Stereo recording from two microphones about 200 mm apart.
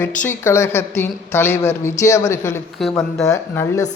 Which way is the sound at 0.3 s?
15° left (ahead or behind).